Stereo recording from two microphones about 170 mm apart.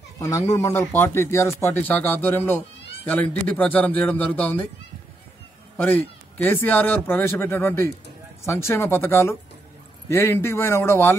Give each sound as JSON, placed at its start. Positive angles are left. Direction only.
{"t": 0.2, "sound": "a man's voice", "side_deg": 20}
{"t": 5.8, "sound": "a man's voice", "side_deg": 10}